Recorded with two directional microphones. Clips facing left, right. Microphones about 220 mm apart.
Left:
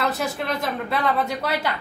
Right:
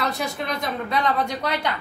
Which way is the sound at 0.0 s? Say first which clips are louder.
Left 2 dB; 5° left (ahead or behind).